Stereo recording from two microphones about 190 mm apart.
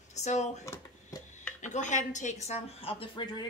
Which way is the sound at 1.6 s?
40° left (ahead or behind).